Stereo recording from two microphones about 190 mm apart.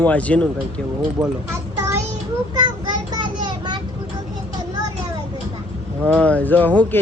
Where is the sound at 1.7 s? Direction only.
15° right (ahead or behind).